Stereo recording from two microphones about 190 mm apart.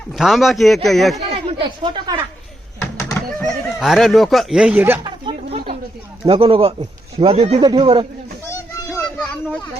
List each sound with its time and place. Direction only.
0.1 s a man's voice: centre (ahead or behind)
1.3 s speech: 30° right (ahead or behind)
3.0 s speech: 5° left (ahead or behind)
5.0 s a sound: 25° right (ahead or behind)
6.2 s speech: 30° right (ahead or behind)
8.9 s a sound: 5° left (ahead or behind)